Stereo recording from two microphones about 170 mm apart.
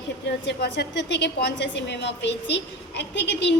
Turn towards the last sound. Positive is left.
turn(degrees=90)